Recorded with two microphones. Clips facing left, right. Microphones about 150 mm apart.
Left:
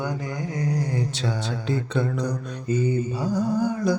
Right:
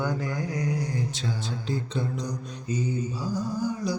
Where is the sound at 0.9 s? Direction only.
70° left (ahead or behind).